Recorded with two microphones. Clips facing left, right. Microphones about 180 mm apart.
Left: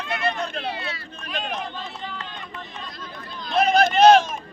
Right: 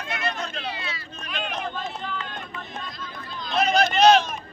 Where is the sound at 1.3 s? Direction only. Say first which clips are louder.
Left 1 dB; 35° left (ahead or behind).